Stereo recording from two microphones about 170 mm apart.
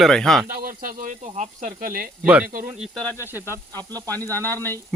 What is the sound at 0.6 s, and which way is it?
Speech, 55° right (ahead or behind).